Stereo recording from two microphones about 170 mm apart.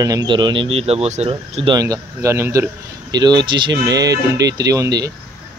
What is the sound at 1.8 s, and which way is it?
A man's voice, 20° right (ahead or behind).